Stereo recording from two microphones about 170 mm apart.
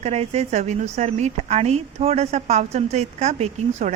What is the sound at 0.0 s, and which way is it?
A woman's voice, 40° right (ahead or behind).